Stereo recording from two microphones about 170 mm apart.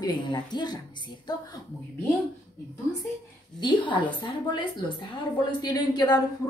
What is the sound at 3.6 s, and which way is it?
A woman's voice, 30° left (ahead or behind).